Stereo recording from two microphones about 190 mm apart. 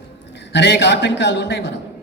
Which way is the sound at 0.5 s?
65° left (ahead or behind).